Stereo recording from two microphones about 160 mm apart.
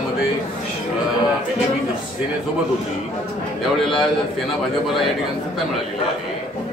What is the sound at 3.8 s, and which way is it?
Speech, centre (ahead or behind).